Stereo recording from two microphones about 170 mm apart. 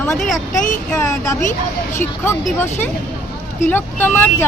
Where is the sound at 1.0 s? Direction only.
20° left (ahead or behind).